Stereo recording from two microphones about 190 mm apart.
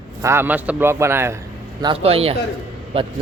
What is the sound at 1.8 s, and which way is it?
Speech, 30° right (ahead or behind).